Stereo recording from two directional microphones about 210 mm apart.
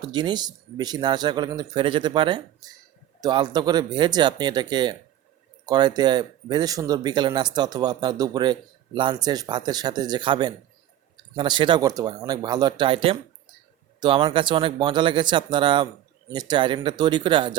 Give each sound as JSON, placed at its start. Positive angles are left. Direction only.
{"t": 0.0, "sound": "speech", "side_deg": -20}